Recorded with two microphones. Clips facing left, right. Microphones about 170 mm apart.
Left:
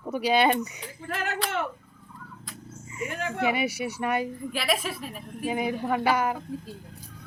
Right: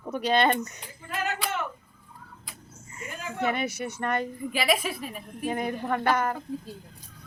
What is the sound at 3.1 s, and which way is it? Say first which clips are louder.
Speech: left 3 dB; 70° left (ahead or behind).